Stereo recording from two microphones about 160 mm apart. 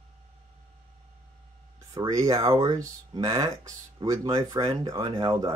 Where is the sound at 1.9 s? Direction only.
20° right (ahead or behind).